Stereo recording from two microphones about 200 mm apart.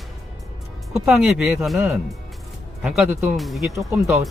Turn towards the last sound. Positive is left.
turn(degrees=-15)  # may be behind; listen again after turning